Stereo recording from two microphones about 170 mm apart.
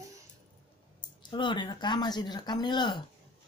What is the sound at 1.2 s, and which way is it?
Speech, 25° left (ahead or behind).